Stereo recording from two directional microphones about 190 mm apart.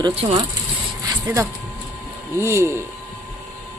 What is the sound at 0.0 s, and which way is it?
Speech, 30° right (ahead or behind).